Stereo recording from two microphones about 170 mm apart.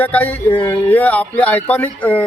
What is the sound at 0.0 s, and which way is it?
A man's voice, 10° left (ahead or behind).